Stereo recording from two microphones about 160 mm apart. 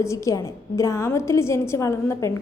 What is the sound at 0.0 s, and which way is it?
A woman's voice, 20° left (ahead or behind).